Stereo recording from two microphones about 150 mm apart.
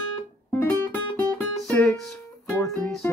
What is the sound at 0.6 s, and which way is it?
Music, 15° left (ahead or behind).